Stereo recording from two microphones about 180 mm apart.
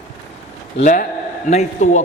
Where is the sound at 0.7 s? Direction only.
45° left (ahead or behind).